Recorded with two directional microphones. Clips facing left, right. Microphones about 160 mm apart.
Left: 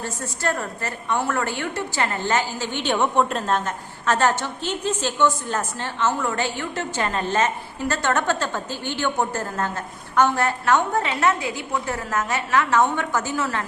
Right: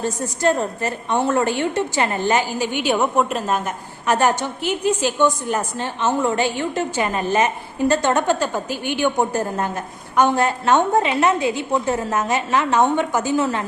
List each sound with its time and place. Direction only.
0.0 s a woman's voice: 20° right (ahead or behind)